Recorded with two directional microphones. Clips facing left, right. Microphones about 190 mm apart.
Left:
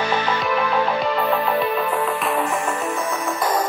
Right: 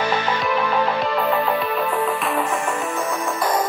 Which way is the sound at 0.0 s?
10° right (ahead or behind).